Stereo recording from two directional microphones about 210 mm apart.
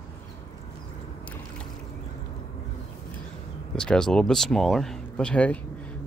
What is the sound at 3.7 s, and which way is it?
Speech, 5° left (ahead or behind).